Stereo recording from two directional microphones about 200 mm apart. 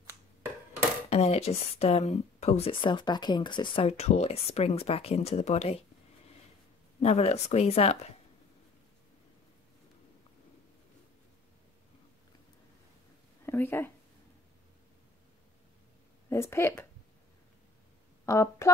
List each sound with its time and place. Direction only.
1.1 s speech: 30° left (ahead or behind)
7.0 s speech: 30° left (ahead or behind)
13.5 s a sound: 10° left (ahead or behind)
16.3 s a woman's voice: 15° left (ahead or behind)
18.2 s speech: 15° left (ahead or behind)